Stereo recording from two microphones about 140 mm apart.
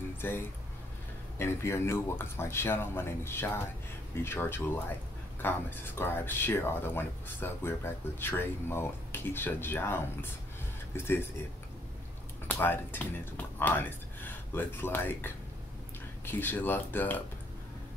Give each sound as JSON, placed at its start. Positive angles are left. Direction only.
{"t": 0.2, "sound": "speech", "side_deg": 15}
{"t": 12.4, "sound": "speech", "side_deg": 15}